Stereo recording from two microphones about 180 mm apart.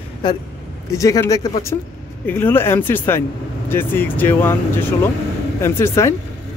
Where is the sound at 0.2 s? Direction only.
25° left (ahead or behind).